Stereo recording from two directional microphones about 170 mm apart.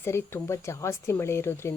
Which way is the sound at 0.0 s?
15° left (ahead or behind).